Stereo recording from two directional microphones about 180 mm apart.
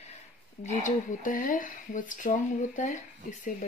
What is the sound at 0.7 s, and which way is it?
Speech, 45° left (ahead or behind).